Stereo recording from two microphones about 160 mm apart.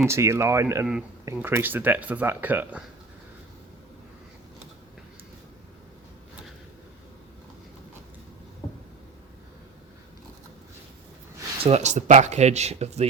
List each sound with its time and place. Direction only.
0.1 s speech: 15° right (ahead or behind)
11.6 s speech: 45° right (ahead or behind)